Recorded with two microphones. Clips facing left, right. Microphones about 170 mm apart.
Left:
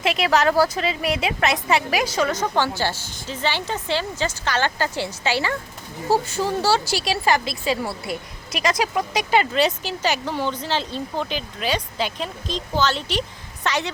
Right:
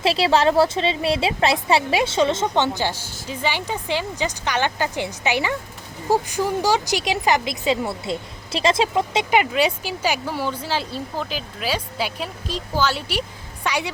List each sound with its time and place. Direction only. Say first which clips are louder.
0.0 s a woman's voice: right 2 dB; 30° right (ahead or behind); by 13.9 s 10° right (ahead or behind)